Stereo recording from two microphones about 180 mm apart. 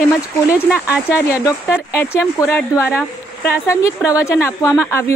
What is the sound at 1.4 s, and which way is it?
A woman's voice, 15° left (ahead or behind).